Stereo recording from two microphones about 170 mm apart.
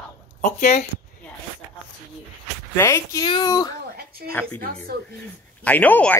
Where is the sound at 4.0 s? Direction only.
65° right (ahead or behind).